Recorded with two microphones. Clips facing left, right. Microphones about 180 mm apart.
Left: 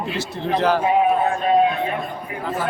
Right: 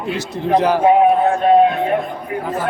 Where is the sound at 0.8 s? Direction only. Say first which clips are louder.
Right 6 dB; 60° right (ahead or behind).